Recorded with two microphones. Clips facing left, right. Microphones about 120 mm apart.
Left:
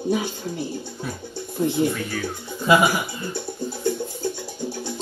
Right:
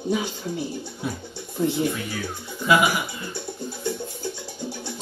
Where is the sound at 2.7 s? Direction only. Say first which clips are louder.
Left 2 dB; 35° left (ahead or behind).